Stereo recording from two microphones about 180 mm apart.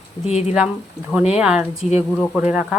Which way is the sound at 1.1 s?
5° right (ahead or behind).